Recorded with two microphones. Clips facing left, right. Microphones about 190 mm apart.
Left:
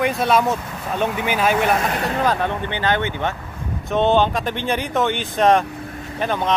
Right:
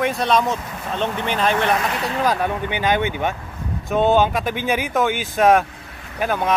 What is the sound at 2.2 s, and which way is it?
Speech, 10° right (ahead or behind).